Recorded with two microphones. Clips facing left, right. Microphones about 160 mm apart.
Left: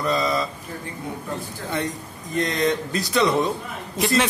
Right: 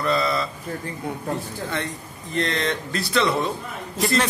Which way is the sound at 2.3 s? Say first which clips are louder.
Left 2 dB; 15° left (ahead or behind).